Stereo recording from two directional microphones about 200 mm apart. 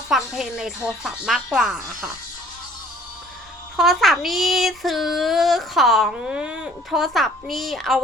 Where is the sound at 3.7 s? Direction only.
Centre (ahead or behind).